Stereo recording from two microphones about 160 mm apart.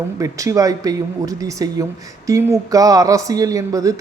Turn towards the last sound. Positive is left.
turn(degrees=-20)  # may be behind; listen again after turning